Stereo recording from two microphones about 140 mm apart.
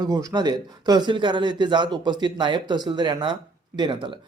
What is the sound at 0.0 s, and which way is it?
Speech, 25° right (ahead or behind).